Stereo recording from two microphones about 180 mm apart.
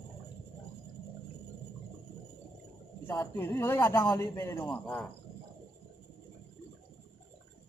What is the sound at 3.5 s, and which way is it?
A man's voice, 15° left (ahead or behind).